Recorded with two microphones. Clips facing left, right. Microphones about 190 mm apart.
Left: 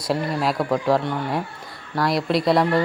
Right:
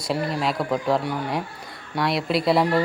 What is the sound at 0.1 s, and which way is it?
Speech, centre (ahead or behind).